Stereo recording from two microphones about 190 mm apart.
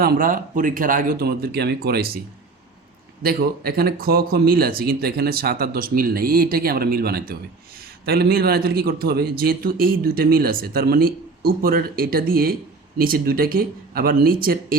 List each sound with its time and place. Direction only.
0.0 s a man's voice: 50° right (ahead or behind)
3.2 s a man's voice: 50° right (ahead or behind)